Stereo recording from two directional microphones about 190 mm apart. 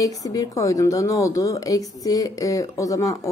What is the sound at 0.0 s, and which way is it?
Speech, 20° left (ahead or behind).